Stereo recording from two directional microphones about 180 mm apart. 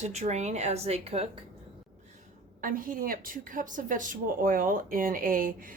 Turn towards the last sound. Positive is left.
turn(degrees=-50)  # may be behind; listen again after turning